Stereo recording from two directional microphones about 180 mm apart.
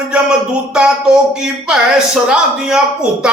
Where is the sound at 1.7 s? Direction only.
5° right (ahead or behind).